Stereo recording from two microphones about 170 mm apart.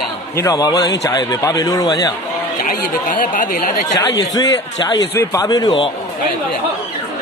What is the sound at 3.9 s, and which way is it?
Speech, 25° left (ahead or behind).